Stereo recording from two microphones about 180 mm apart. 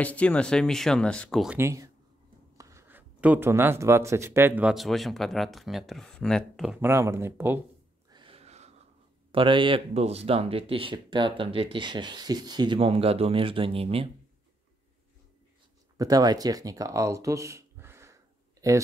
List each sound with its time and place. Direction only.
0.0 s speech: 5° left (ahead or behind)
1.6 s speech: 15° right (ahead or behind)
8.1 s gasp: 30° right (ahead or behind)
9.3 s speech: 30° right (ahead or behind)
16.0 s speech: 20° right (ahead or behind)